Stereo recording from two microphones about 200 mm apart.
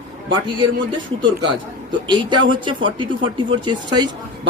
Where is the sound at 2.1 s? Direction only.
25° right (ahead or behind).